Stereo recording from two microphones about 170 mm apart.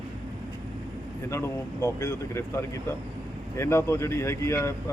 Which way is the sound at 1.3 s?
15° left (ahead or behind).